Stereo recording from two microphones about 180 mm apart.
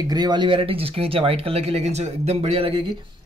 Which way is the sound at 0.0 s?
20° right (ahead or behind).